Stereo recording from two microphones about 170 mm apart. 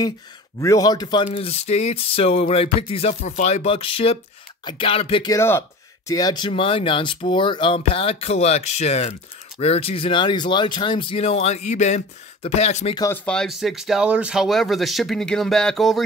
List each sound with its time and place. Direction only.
0.6 s speech: 20° left (ahead or behind)
5.2 s speech: 15° left (ahead or behind); by 12.9 s 40° left (ahead or behind)
13.1 s speech: 5° left (ahead or behind)